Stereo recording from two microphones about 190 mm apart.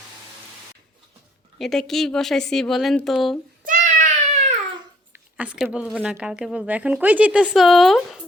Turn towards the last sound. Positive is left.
turn(degrees=0)  # may be behind; listen again after turning